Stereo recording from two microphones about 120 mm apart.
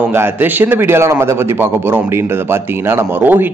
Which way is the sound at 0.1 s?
15° right (ahead or behind).